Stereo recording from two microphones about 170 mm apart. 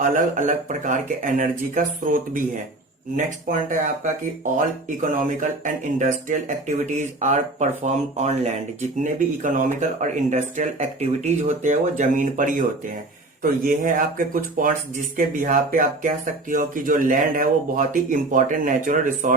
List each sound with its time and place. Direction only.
0.0 s speech: 45° right (ahead or behind)